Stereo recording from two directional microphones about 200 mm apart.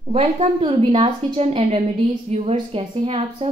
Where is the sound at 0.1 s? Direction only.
30° right (ahead or behind).